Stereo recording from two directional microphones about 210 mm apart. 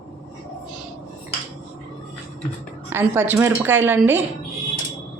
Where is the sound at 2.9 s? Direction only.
10° right (ahead or behind).